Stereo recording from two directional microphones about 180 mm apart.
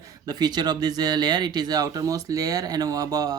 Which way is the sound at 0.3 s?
25° right (ahead or behind).